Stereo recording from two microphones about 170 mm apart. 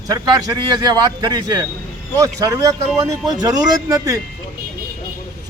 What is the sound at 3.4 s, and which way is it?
Speech, 20° right (ahead or behind).